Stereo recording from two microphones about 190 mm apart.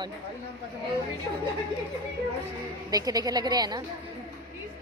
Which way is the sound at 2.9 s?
20° right (ahead or behind).